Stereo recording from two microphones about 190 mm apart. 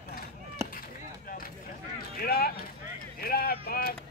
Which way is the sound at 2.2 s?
50° left (ahead or behind).